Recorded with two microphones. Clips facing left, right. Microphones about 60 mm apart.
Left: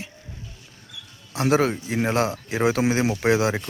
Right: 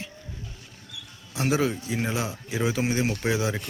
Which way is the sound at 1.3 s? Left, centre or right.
Left.